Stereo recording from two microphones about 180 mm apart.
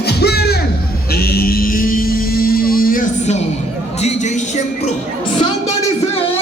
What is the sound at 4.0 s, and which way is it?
Music, 40° left (ahead or behind).